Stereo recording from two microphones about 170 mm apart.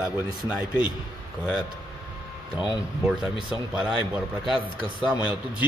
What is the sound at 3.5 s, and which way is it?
A man's voice, 5° right (ahead or behind).